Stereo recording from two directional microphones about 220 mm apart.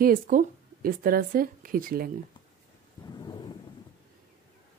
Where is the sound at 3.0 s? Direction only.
20° left (ahead or behind).